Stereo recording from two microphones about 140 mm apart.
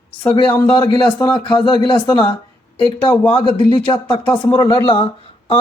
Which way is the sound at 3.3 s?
40° left (ahead or behind).